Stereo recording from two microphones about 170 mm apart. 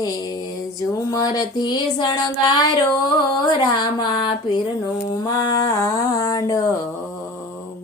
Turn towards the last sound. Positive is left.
turn(degrees=20)  # may be behind; listen again after turning